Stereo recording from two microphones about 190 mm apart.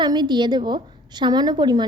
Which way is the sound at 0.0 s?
25° right (ahead or behind).